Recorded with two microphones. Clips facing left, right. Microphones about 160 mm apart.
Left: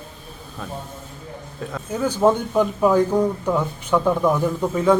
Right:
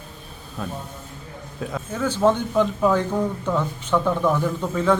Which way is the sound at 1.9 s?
10° left (ahead or behind).